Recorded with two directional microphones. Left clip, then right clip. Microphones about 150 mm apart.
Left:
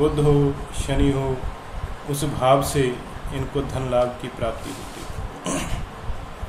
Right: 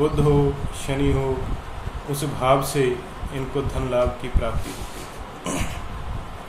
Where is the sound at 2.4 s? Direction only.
10° left (ahead or behind).